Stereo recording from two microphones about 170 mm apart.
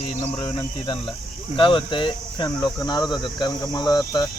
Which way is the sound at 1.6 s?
30° left (ahead or behind).